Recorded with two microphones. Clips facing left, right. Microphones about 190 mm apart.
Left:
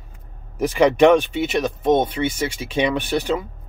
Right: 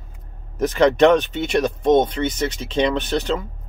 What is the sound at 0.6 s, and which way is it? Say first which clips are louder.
Speech: even; 10° left (ahead or behind).